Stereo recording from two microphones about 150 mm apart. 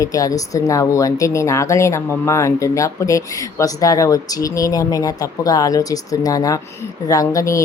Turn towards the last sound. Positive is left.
turn(degrees=20)  # may be behind; listen again after turning